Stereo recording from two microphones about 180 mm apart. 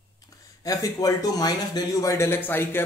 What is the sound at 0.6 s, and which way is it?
Speech, 20° left (ahead or behind).